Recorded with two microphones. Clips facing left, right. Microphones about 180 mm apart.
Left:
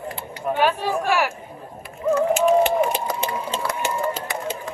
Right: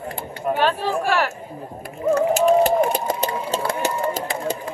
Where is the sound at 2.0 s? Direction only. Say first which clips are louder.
Right 1 dB; 40° right (ahead or behind).